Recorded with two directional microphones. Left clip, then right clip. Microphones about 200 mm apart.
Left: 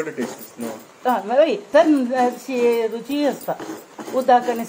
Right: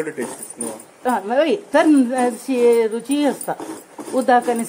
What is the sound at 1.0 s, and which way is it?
A woman's voice, 40° right (ahead or behind).